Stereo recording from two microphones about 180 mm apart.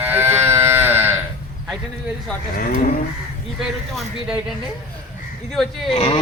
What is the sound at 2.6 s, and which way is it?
Cattle, 45° left (ahead or behind).